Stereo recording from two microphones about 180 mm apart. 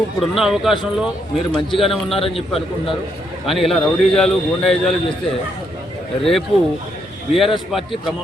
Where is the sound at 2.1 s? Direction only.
30° left (ahead or behind).